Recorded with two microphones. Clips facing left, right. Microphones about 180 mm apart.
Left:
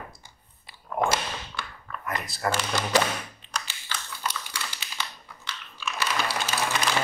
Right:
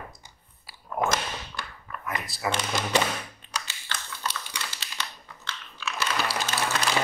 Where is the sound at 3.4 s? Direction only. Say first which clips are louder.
Left 1 dB; 50° right (ahead or behind).